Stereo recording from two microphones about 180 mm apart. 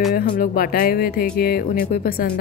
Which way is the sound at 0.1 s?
55° left (ahead or behind).